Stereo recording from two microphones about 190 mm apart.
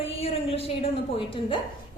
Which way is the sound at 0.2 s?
30° left (ahead or behind).